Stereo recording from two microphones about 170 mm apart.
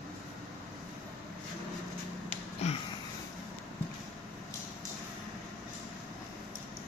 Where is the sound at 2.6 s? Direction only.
40° left (ahead or behind).